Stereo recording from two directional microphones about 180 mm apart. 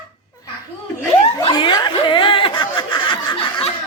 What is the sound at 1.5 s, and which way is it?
Snicker, 25° left (ahead or behind).